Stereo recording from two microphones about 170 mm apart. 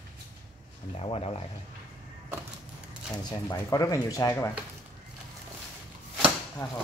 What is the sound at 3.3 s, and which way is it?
Speech, 20° left (ahead or behind).